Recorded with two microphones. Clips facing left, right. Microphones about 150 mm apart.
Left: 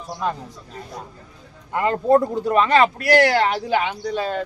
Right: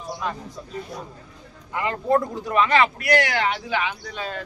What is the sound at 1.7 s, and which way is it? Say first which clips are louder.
Speech: left 5 dB; 35° left (ahead or behind).